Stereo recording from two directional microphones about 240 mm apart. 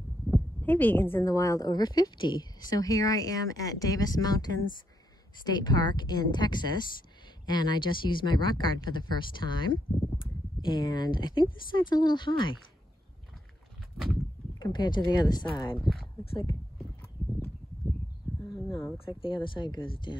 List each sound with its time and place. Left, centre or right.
0.6 s a woman's voice: centre
14.6 s a woman's voice: centre
18.4 s a sound: centre
19.2 s speech: centre